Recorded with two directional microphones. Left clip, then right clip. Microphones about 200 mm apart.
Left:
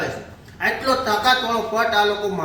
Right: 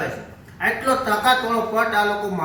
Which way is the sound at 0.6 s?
Centre (ahead or behind).